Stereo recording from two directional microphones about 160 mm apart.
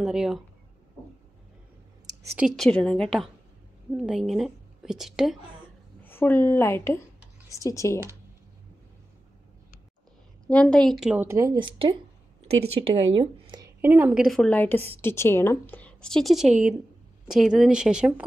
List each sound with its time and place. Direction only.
0.0 s speech: 5° right (ahead or behind)
2.3 s a woman's voice: centre (ahead or behind)
6.0 s a woman's voice: 15° left (ahead or behind)
10.4 s speech: 5° left (ahead or behind)
11.1 s speech: 15° right (ahead or behind)
11.5 s speech: 30° right (ahead or behind)
13.7 s a woman's voice: 15° right (ahead or behind)
14.2 s a woman's voice: 5° left (ahead or behind)